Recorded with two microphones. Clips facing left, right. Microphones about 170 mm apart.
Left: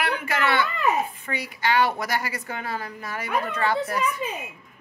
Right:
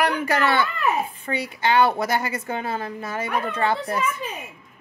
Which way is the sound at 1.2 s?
25° right (ahead or behind).